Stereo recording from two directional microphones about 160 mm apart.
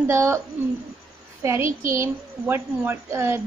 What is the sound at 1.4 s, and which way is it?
A child's voice, 15° right (ahead or behind).